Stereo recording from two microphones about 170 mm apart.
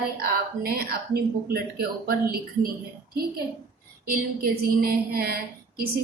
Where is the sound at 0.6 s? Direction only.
65° right (ahead or behind).